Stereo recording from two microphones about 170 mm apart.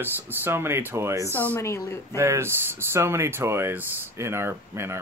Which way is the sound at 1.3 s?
10° left (ahead or behind).